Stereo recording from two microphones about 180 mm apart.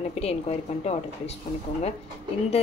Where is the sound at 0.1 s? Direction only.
35° left (ahead or behind).